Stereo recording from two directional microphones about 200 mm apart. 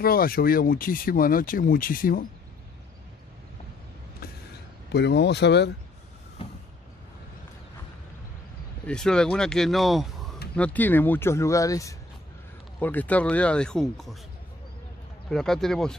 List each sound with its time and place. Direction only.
0.0 s speech: 45° left (ahead or behind)
4.2 s vehicle: 50° left (ahead or behind)
4.9 s speech: 55° left (ahead or behind)
6.4 s vehicle: 30° left (ahead or behind)
8.8 s speech: 5° left (ahead or behind)
15.2 s speech: centre (ahead or behind)